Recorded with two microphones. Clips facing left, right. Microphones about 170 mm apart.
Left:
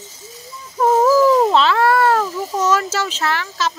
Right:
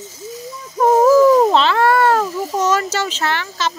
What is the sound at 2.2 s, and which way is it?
Speech, 15° right (ahead or behind).